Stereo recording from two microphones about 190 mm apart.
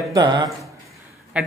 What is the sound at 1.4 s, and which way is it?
Speech, 5° right (ahead or behind).